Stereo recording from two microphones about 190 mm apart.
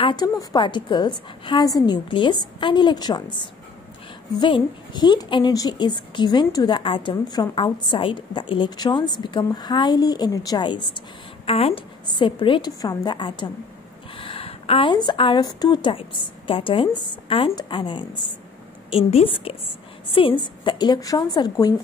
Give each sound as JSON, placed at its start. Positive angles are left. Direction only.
{"t": 0.0, "sound": "a woman's voice", "side_deg": 20}